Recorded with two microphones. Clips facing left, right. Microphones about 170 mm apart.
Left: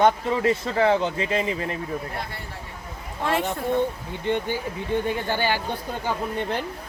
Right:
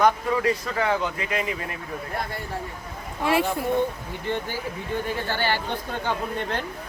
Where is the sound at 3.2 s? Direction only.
10° right (ahead or behind).